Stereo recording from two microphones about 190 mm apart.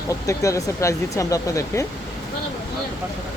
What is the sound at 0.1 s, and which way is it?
Speech, 15° left (ahead or behind).